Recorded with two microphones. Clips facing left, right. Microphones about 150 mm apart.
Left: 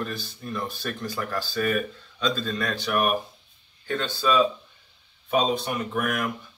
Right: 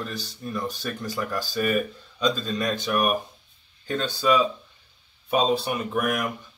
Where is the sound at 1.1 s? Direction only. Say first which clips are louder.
Right 2 dB; 15° right (ahead or behind).